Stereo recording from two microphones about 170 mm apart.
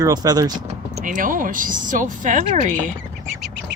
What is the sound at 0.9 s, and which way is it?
Speech, 50° right (ahead or behind).